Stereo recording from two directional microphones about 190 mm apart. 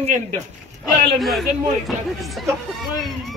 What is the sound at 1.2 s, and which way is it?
Speech, centre (ahead or behind).